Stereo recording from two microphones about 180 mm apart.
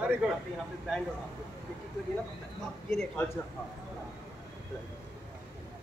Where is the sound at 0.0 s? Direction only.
5° right (ahead or behind).